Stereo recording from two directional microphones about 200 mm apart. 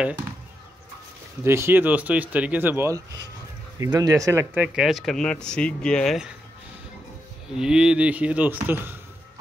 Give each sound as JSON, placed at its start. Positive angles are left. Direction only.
{"t": 1.4, "sound": "speech", "side_deg": -15}
{"t": 3.8, "sound": "speech", "side_deg": -20}
{"t": 4.7, "sound": "speech", "side_deg": 0}
{"t": 7.5, "sound": "speech", "side_deg": -5}